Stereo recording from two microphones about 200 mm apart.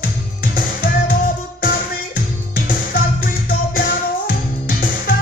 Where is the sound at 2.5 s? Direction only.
45° left (ahead or behind).